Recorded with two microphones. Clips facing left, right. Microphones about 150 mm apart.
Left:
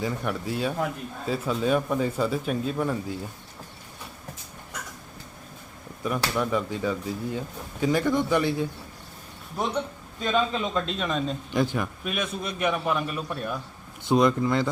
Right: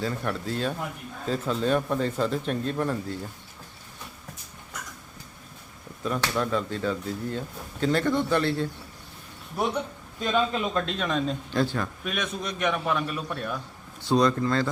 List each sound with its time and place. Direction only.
0.0 s speech: 10° left (ahead or behind)
6.0 s speech: 10° left (ahead or behind)
10.2 s a man's voice: centre (ahead or behind)
11.5 s speech: 15° left (ahead or behind)
12.0 s a man's voice: 5° left (ahead or behind)
14.1 s speech: 20° left (ahead or behind)